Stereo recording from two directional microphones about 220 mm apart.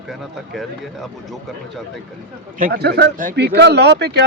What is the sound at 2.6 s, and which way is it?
Speech, 45° right (ahead or behind).